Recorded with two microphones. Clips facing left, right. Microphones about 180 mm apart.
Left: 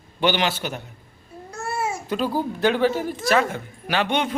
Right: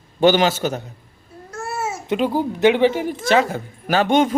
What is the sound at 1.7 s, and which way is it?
Babbling, 5° right (ahead or behind).